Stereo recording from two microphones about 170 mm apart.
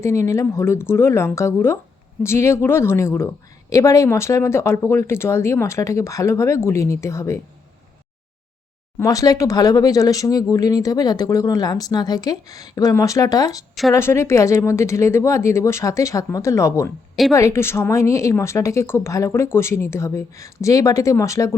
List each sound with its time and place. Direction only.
0.0 s a woman's voice: 15° left (ahead or behind)
9.0 s a woman's voice: 20° left (ahead or behind)